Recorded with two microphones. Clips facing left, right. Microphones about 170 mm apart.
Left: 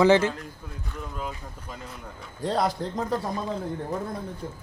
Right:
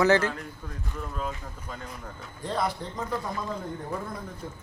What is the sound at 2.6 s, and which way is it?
Speech, 40° left (ahead or behind).